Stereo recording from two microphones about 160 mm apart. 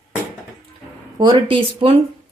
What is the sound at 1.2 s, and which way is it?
Speech, 30° right (ahead or behind).